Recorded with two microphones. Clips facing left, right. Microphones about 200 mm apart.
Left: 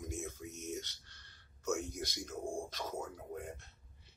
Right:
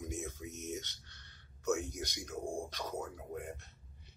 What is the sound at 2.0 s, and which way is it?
Speech, 5° left (ahead or behind).